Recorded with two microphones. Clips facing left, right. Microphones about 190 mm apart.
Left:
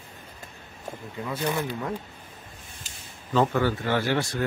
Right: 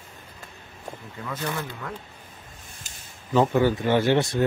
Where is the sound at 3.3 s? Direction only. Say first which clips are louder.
Right 3 dB; 15° right (ahead or behind).